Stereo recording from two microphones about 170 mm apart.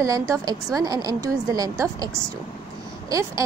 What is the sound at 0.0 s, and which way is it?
A woman's voice, 20° right (ahead or behind).